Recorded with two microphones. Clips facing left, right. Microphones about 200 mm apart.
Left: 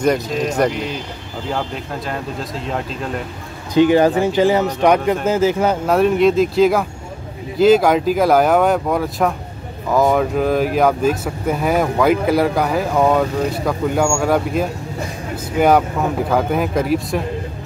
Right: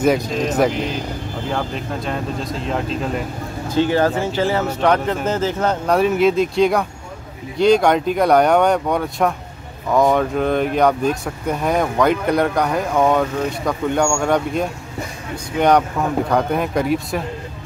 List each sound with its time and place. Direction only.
0.0 s speech: centre (ahead or behind)
2.0 s speech: centre (ahead or behind)
3.7 s speech: 15° left (ahead or behind)